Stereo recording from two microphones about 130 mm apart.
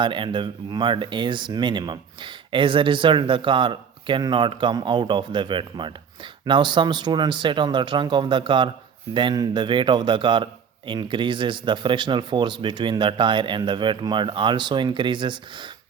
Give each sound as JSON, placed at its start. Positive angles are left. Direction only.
{"t": 0.0, "sound": "a man's voice", "side_deg": -40}